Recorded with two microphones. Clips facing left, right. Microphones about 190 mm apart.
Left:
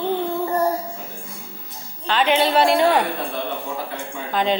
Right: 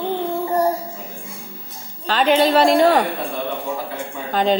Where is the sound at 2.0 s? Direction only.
40° right (ahead or behind).